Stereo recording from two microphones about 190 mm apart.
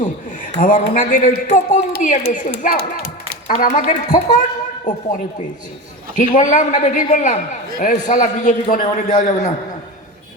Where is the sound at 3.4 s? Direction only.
45° left (ahead or behind).